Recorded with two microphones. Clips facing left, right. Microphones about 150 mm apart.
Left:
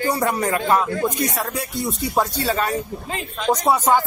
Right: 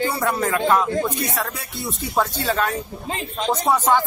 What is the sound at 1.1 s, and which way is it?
Speech, 40° left (ahead or behind).